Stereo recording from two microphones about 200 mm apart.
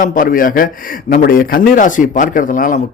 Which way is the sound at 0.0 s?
45° left (ahead or behind).